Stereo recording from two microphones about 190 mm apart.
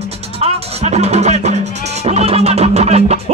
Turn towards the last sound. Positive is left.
turn(degrees=-35)  # may be behind; listen again after turning